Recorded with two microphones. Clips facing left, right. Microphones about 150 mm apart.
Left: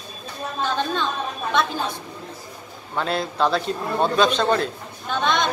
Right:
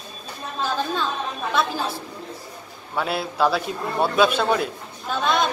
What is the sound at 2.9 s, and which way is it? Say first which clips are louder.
A man's voice: even; 10° right (ahead or behind).